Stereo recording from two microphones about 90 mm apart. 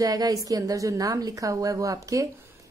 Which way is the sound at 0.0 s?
45° right (ahead or behind).